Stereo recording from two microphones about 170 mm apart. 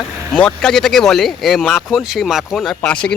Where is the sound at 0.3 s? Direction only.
5° left (ahead or behind).